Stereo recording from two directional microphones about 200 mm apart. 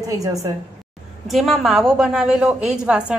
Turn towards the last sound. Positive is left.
turn(degrees=-5)  # may be behind; listen again after turning